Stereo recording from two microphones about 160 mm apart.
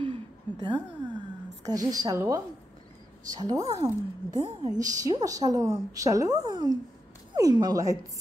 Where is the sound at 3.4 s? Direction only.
20° right (ahead or behind).